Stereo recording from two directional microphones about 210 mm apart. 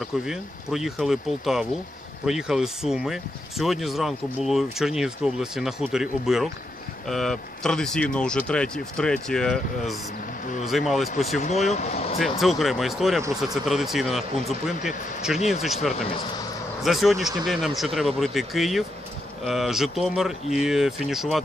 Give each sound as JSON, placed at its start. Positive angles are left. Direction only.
{"t": 0.2, "sound": "speech", "side_deg": 0}
{"t": 10.4, "sound": "speech", "side_deg": 40}
{"t": 10.7, "sound": "speech", "side_deg": 0}
{"t": 11.2, "sound": "speech", "side_deg": 35}
{"t": 12.2, "sound": "speech", "side_deg": 0}
{"t": 14.8, "sound": "speech", "side_deg": 35}
{"t": 16.8, "sound": "speech", "side_deg": 0}